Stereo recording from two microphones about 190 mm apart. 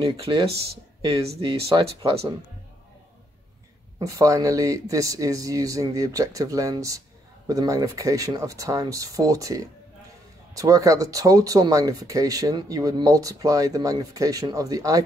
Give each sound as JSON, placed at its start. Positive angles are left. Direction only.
{"t": 0.0, "sound": "speech", "side_deg": -30}
{"t": 4.0, "sound": "speech", "side_deg": -15}